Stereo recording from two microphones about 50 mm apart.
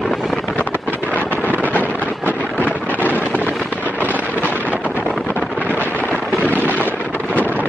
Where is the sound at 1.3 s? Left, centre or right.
Left.